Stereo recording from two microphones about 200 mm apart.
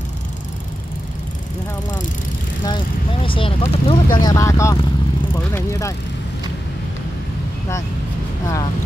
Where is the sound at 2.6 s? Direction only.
25° left (ahead or behind).